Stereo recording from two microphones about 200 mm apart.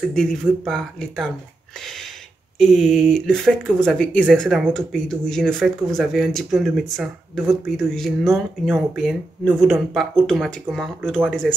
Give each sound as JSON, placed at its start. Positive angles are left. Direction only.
{"t": 0.1, "sound": "speech", "side_deg": 5}
{"t": 2.6, "sound": "speech", "side_deg": 0}